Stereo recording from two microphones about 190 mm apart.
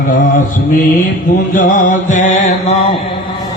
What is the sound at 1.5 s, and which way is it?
Mantra, 45° left (ahead or behind).